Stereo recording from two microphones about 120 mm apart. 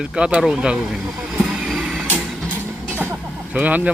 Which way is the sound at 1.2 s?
10° right (ahead or behind).